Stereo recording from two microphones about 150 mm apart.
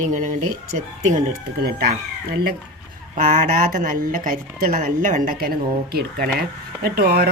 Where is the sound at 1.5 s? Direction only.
90° right.